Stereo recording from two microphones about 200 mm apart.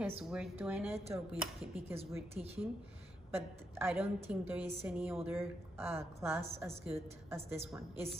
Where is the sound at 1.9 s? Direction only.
30° right (ahead or behind).